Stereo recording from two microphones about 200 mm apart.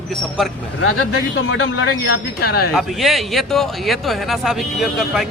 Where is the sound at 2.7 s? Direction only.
Centre (ahead or behind).